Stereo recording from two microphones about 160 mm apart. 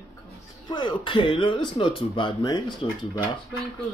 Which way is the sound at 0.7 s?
30° left (ahead or behind).